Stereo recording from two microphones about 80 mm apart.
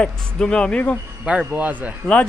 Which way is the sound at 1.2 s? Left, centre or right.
Centre.